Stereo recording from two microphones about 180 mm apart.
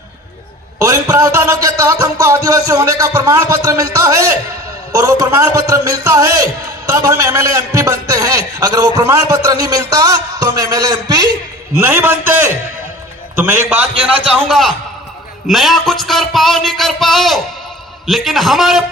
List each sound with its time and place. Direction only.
0.8 s a man's voice: 15° right (ahead or behind); by 18.8 s centre (ahead or behind)